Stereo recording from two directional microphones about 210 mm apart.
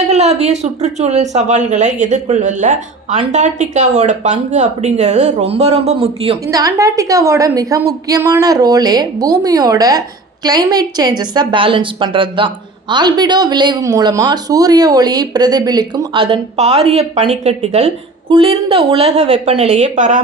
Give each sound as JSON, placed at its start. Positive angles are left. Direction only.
{"t": 0.1, "sound": "speech", "side_deg": -30}
{"t": 6.5, "sound": "a woman's voice", "side_deg": -15}